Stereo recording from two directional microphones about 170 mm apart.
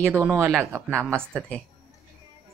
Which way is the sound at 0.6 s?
15° right (ahead or behind).